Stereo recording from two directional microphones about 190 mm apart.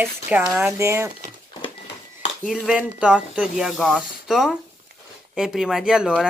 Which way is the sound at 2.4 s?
5° right (ahead or behind).